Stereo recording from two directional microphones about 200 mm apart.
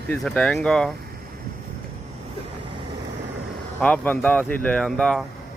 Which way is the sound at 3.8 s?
5° left (ahead or behind).